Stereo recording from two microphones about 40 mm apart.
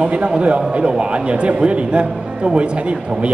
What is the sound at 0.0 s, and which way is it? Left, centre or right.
A man's voice, right.